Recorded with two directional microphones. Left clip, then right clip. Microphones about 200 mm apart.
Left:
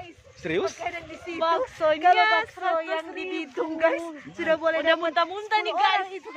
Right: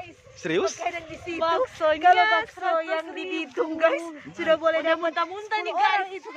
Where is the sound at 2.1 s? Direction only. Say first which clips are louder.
Even; 25° left (ahead or behind).